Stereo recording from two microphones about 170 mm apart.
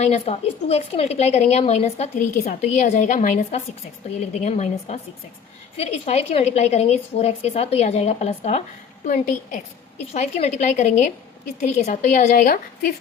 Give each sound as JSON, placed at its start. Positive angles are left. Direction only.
{"t": 0.0, "sound": "a woman's voice", "side_deg": 40}